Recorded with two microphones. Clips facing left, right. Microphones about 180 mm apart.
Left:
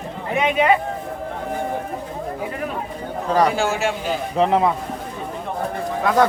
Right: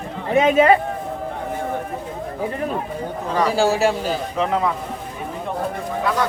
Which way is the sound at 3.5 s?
35° right (ahead or behind).